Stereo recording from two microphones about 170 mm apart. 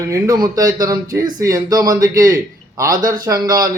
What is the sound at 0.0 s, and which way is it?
Speech, 20° right (ahead or behind).